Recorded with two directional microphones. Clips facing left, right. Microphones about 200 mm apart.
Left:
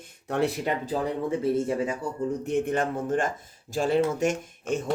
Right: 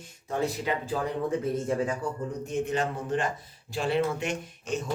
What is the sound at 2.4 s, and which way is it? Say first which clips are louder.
Speech: left 1 dB; 60° left (ahead or behind).